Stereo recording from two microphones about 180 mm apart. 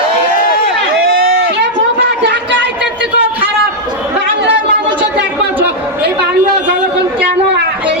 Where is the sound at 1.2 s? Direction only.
55° right (ahead or behind); by 2.7 s 80° right.